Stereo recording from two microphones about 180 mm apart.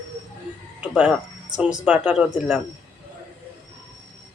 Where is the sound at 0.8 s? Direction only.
5° right (ahead or behind).